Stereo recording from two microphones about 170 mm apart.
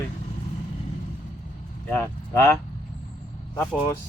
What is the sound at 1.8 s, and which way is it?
Speech, 10° left (ahead or behind).